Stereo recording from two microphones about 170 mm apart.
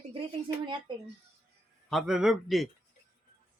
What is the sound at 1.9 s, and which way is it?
Speech, centre (ahead or behind).